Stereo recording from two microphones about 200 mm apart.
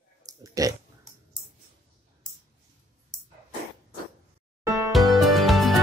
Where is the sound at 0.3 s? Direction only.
15° right (ahead or behind).